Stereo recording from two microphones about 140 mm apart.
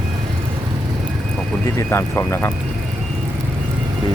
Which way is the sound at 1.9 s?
20° left (ahead or behind).